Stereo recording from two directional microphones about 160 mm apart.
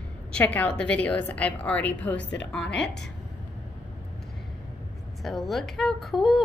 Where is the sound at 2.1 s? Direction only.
90° left.